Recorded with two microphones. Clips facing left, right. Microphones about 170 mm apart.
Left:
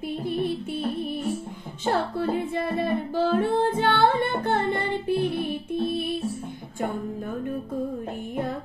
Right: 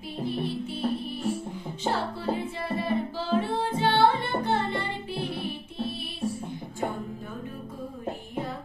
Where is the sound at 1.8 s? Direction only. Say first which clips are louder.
Left 4 dB; 55° left (ahead or behind).